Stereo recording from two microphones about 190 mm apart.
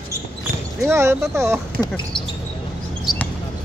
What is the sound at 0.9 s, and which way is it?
Speech, 15° right (ahead or behind).